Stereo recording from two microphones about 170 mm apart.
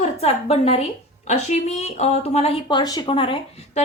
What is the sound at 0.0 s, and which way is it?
A woman's voice, 35° left (ahead or behind).